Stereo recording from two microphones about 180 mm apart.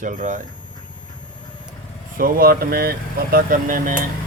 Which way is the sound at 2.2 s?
55° right (ahead or behind).